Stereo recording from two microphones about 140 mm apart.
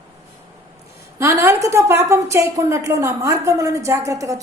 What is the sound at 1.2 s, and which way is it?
A woman's voice, 20° right (ahead or behind).